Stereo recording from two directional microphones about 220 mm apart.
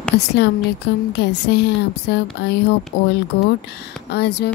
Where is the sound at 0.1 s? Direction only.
50° left (ahead or behind).